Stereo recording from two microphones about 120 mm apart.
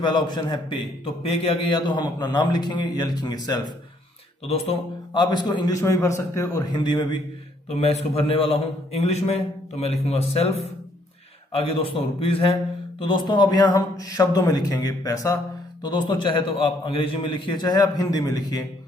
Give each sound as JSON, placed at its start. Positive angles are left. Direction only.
{"t": 0.0, "sound": "a man's voice", "side_deg": 40}
{"t": 4.5, "sound": "a man's voice", "side_deg": 45}
{"t": 7.7, "sound": "a man's voice", "side_deg": 60}
{"t": 15.8, "sound": "a man's voice", "side_deg": 40}